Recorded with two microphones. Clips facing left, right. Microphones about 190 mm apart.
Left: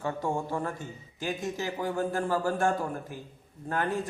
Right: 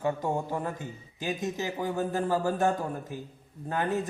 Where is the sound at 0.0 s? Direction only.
20° right (ahead or behind).